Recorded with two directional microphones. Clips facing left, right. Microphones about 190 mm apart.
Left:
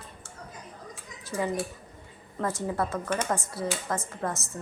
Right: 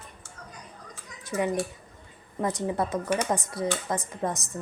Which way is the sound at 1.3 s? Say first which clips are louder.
Right 2 dB; 20° right (ahead or behind).